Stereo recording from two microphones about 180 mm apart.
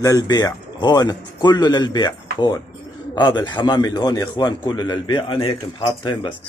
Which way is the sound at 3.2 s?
25° left (ahead or behind).